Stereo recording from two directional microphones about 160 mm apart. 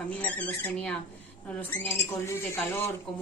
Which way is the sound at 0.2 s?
10° left (ahead or behind).